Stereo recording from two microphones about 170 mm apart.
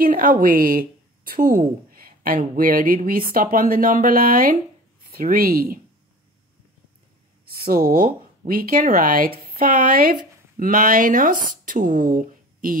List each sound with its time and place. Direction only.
0.0 s a woman's voice: 55° right (ahead or behind)
7.4 s a woman's voice: 60° right (ahead or behind)